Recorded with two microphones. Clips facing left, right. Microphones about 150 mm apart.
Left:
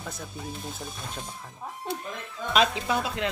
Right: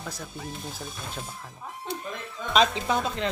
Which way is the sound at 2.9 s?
5° left (ahead or behind).